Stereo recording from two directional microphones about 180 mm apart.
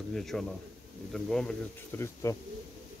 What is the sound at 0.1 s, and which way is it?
Speech, centre (ahead or behind).